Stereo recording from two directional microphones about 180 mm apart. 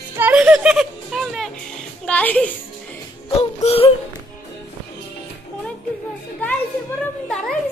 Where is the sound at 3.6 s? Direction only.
30° left (ahead or behind).